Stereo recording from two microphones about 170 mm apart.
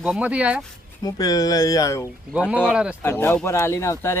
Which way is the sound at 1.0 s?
20° left (ahead or behind).